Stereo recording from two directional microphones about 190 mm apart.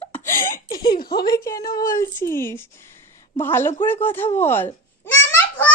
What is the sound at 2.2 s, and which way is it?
Speech, 50° left (ahead or behind).